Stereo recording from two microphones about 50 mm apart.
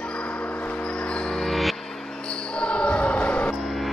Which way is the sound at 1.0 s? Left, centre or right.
Centre.